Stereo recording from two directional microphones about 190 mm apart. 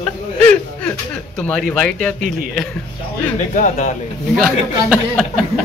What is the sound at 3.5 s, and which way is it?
Speech, 40° left (ahead or behind).